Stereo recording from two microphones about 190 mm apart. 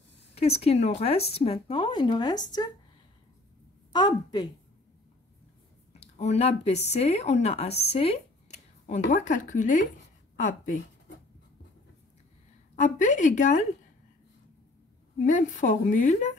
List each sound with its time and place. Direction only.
0.3 s speech: 35° left (ahead or behind)
3.9 s a woman's voice: 20° left (ahead or behind)
5.9 s speech: 35° left (ahead or behind)
12.7 s speech: 40° left (ahead or behind)
15.2 s speech: 40° left (ahead or behind)